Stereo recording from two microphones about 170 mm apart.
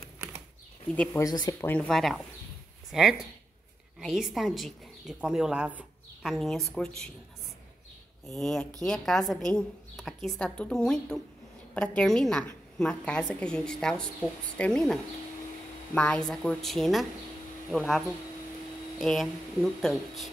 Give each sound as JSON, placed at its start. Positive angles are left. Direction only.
{"t": 1.1, "sound": "speech", "side_deg": 20}
{"t": 1.7, "sound": "a woman's voice", "side_deg": 5}
{"t": 8.3, "sound": "a woman's voice", "side_deg": 0}